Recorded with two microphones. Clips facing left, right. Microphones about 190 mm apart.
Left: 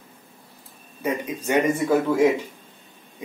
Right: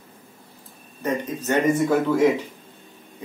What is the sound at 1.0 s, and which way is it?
Speech, 10° left (ahead or behind).